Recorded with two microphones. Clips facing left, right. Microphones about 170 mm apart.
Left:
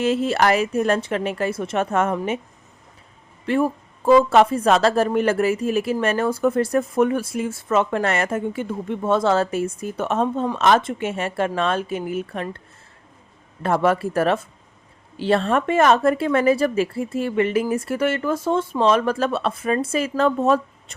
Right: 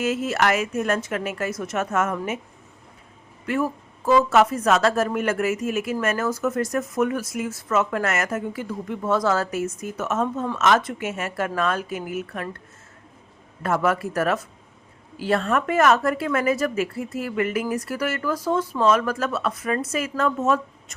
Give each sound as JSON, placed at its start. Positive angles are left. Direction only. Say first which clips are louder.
{"t": 0.0, "sound": "speech", "louder": "left 4 dB", "side_deg": 30}
{"t": 3.4, "sound": "speech", "louder": "left 4 dB", "side_deg": 30}